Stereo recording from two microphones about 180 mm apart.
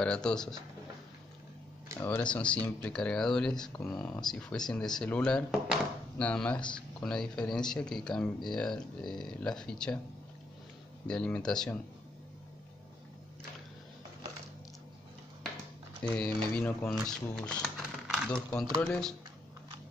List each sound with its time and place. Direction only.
0.0 s speech: 5° left (ahead or behind)
2.0 s speech: 10° left (ahead or behind)
11.1 s speech: 5° left (ahead or behind)
16.0 s speech: 5° left (ahead or behind)